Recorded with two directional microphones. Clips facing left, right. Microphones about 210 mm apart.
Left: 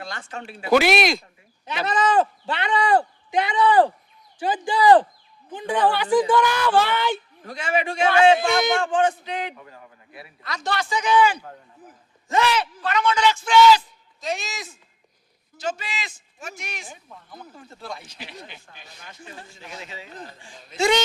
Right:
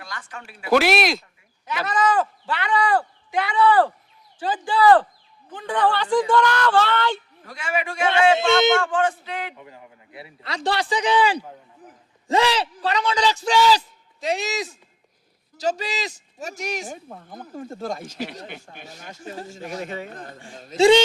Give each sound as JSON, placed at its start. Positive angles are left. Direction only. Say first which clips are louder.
{"t": 0.0, "sound": "speech", "louder": "left 4 dB", "side_deg": 25}
{"t": 0.7, "sound": "speech", "louder": "even", "side_deg": 0}
{"t": 1.6, "sound": "speech", "louder": "even", "side_deg": 25}
{"t": 4.4, "sound": "a sound", "louder": "right 1 dB", "side_deg": 15}
{"t": 7.4, "sound": "speech", "louder": "left 3 dB", "side_deg": 20}
{"t": 8.4, "sound": "speech", "louder": "right 4 dB", "side_deg": -25}
{"t": 8.8, "sound": "speech", "louder": "left 1 dB", "side_deg": 20}
{"t": 9.6, "sound": "a man's voice", "louder": "right 1 dB", "side_deg": -20}